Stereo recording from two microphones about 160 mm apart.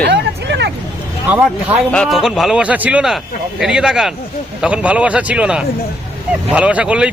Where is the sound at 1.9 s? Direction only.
Centre (ahead or behind).